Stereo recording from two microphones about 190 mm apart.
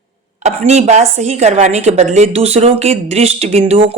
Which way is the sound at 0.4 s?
35° right (ahead or behind).